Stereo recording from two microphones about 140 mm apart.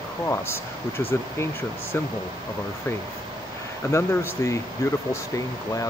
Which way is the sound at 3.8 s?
20° left (ahead or behind).